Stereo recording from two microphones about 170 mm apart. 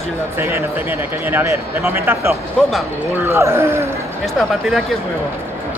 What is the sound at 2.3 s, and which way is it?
Speech, centre (ahead or behind).